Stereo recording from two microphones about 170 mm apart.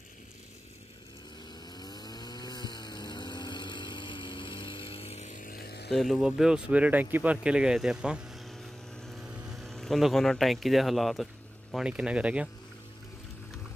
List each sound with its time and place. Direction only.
1.5 s chainsaw: 25° left (ahead or behind); by 5.9 s 70° left (ahead or behind)
5.9 s speech: centre (ahead or behind)